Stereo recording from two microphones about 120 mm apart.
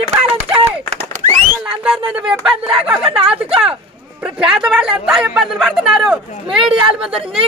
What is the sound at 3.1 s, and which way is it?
Speech, 55° right (ahead or behind).